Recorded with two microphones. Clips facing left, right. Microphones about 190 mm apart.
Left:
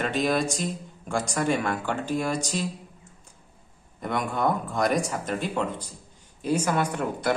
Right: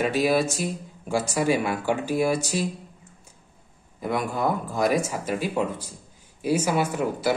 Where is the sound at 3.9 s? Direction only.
5° right (ahead or behind).